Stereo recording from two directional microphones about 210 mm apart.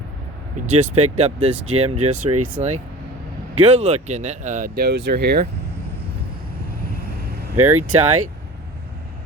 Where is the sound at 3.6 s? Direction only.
30° right (ahead or behind); by 5.4 s 50° right (ahead or behind).